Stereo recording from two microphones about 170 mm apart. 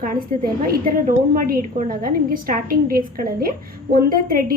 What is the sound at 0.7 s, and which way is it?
A woman's voice, 55° right (ahead or behind).